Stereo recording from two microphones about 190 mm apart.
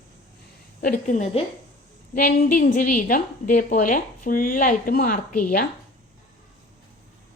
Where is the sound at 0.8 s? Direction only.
45° left (ahead or behind).